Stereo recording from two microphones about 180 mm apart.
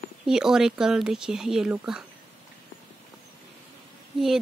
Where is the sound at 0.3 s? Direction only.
5° right (ahead or behind).